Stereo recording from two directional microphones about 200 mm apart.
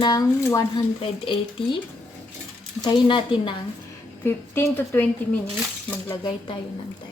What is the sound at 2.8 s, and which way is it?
Speech, 25° left (ahead or behind).